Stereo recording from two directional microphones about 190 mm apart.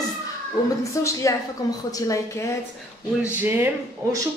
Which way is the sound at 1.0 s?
20° left (ahead or behind).